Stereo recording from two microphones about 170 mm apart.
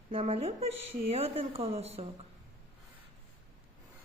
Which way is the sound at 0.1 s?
35° right (ahead or behind).